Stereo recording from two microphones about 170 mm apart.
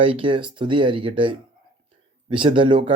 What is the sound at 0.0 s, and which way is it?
Speech, 30° right (ahead or behind).